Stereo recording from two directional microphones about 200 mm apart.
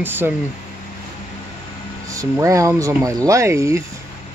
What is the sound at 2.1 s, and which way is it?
Speech, 15° right (ahead or behind).